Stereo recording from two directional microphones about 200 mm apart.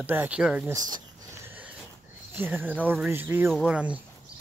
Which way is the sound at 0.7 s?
20° right (ahead or behind).